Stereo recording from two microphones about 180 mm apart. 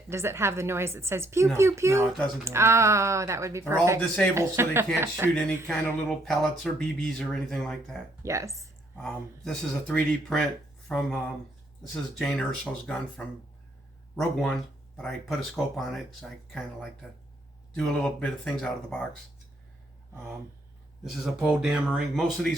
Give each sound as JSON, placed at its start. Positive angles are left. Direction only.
{"t": 0.1, "sound": "a woman's voice", "side_deg": -15}
{"t": 5.3, "sound": "speech", "side_deg": 5}
{"t": 8.2, "sound": "a woman's voice", "side_deg": -15}
{"t": 9.0, "sound": "speech", "side_deg": 5}
{"t": 12.2, "sound": "speech", "side_deg": 5}
{"t": 21.0, "sound": "speech", "side_deg": 0}